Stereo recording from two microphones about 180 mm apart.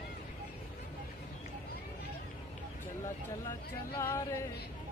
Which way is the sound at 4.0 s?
15° left (ahead or behind).